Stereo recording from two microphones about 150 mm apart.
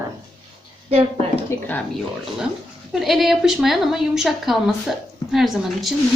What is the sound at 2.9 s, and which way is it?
Speech, centre (ahead or behind).